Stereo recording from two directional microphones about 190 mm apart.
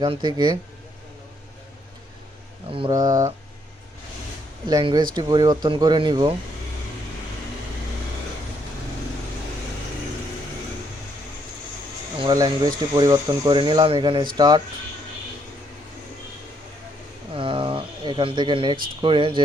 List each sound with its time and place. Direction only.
0.0 s speech: 25° right (ahead or behind)
2.6 s speech: 30° right (ahead or behind)
4.7 s speech: 25° right (ahead or behind)
12.2 s speech: 20° right (ahead or behind)
17.3 s a sound: 25° right (ahead or behind)
19.0 s speech: 25° right (ahead or behind)